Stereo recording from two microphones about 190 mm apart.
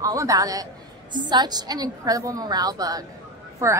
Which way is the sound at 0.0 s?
15° right (ahead or behind).